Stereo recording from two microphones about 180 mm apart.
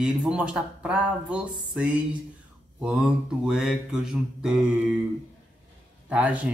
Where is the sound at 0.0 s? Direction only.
5° right (ahead or behind).